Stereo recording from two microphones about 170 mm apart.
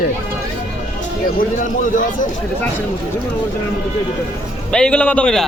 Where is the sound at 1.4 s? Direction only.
50° left (ahead or behind).